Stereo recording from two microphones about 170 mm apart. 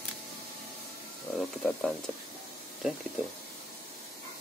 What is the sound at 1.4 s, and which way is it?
Speech, centre (ahead or behind).